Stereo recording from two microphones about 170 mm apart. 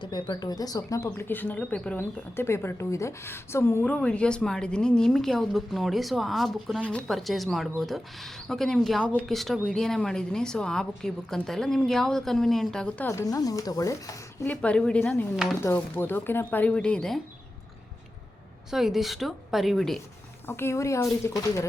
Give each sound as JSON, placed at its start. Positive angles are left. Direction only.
{"t": 0.0, "sound": "speech", "side_deg": 25}
{"t": 13.1, "sound": "speech", "side_deg": 20}
{"t": 14.4, "sound": "speech", "side_deg": 10}
{"t": 18.7, "sound": "speech", "side_deg": 0}
{"t": 20.5, "sound": "speech", "side_deg": 15}